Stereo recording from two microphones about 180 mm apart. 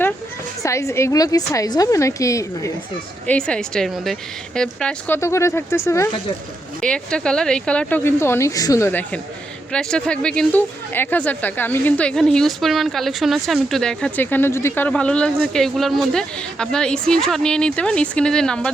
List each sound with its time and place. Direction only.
0.6 s speech: 15° left (ahead or behind)
3.2 s speech: 5° left (ahead or behind)